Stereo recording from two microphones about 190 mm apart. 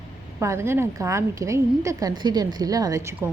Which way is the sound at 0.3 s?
15° right (ahead or behind).